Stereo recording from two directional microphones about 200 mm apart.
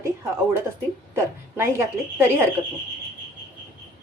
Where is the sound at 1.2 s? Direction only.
15° right (ahead or behind).